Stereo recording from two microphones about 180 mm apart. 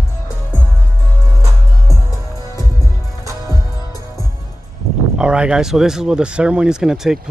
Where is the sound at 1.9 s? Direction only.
20° left (ahead or behind).